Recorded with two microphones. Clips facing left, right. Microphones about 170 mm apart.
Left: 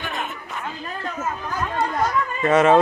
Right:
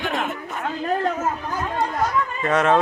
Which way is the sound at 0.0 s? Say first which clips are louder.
Right 4 dB; 90° right.